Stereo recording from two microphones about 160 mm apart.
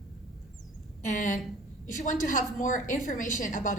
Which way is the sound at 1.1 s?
55° left (ahead or behind).